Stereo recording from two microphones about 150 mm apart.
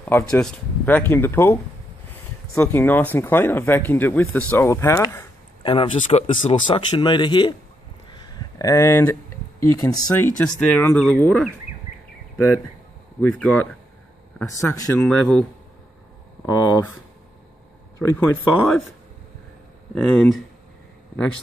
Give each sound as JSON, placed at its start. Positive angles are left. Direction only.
{"t": 0.0, "sound": "speech", "side_deg": 10}
{"t": 5.6, "sound": "speech", "side_deg": 35}
{"t": 8.1, "sound": "a sound", "side_deg": 25}
{"t": 10.1, "sound": "speech", "side_deg": 10}
{"t": 13.2, "sound": "speech", "side_deg": 10}
{"t": 16.4, "sound": "speech", "side_deg": 25}
{"t": 18.1, "sound": "speech", "side_deg": 10}
{"t": 19.9, "sound": "speech", "side_deg": 5}